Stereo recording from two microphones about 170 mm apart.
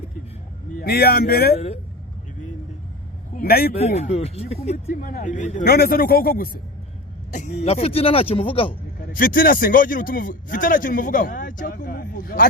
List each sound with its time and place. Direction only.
0.8 s speech: 65° left (ahead or behind)
1.5 s speech: 40° left (ahead or behind)
3.3 s speech: 65° left (ahead or behind)
3.8 s speech: 40° left (ahead or behind)
4.9 s speech: 60° left (ahead or behind)
5.6 s speech: 65° left (ahead or behind)
7.3 s speech: 45° left (ahead or behind)
9.1 s speech: 55° left (ahead or behind)